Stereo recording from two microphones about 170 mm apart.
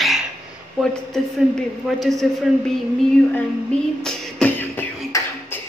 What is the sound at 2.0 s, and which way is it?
Speech, centre (ahead or behind).